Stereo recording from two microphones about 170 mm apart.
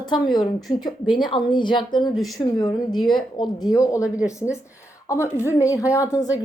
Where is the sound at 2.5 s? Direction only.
25° left (ahead or behind).